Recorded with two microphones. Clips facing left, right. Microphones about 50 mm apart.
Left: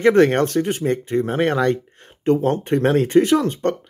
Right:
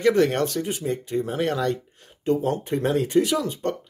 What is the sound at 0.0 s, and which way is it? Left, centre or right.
Speech, left.